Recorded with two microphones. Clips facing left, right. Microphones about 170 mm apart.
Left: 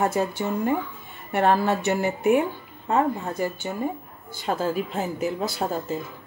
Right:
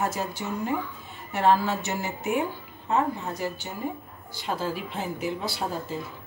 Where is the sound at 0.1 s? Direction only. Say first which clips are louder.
Left 6 dB; 55° left (ahead or behind).